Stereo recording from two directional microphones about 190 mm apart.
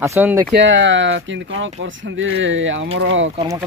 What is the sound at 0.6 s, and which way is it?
Speech, 70° right (ahead or behind).